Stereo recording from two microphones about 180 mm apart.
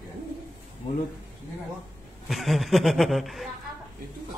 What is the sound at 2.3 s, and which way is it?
A woman's voice, centre (ahead or behind).